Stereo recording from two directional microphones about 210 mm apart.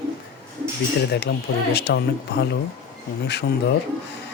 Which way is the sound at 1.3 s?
50° left (ahead or behind).